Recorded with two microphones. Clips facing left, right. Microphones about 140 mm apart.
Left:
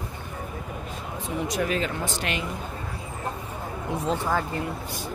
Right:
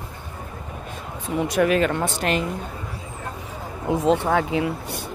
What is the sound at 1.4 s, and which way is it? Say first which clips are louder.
Speech: right 8 dB; 65° right (ahead or behind).